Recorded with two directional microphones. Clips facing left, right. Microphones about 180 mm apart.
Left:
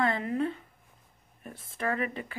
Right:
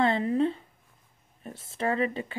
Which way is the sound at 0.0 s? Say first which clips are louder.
Right 4 dB; 30° right (ahead or behind).